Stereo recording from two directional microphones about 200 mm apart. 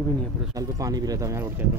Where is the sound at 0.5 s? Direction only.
15° right (ahead or behind).